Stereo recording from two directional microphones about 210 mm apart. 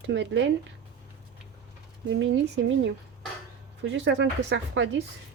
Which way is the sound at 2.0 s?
60° right (ahead or behind).